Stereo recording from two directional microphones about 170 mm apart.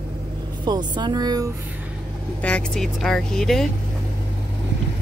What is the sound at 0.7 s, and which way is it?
Speech, 25° right (ahead or behind).